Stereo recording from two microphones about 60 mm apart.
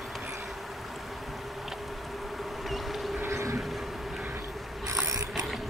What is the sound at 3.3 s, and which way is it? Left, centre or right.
Vehicle, right.